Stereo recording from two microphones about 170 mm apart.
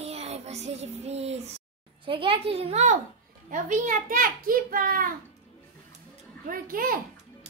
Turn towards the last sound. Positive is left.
turn(degrees=-55)  # may be behind; listen again after turning